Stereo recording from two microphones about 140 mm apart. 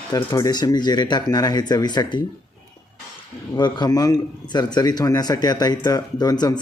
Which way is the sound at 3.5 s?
30° left (ahead or behind).